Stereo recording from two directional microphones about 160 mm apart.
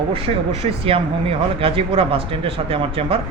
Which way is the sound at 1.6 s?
35° right (ahead or behind).